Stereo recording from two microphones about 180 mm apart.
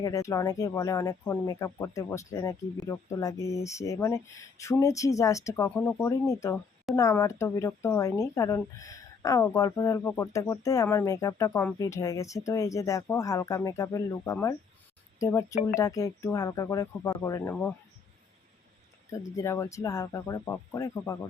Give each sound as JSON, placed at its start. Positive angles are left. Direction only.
{"t": 0.0, "sound": "speech", "side_deg": 20}
{"t": 19.1, "sound": "speech", "side_deg": 15}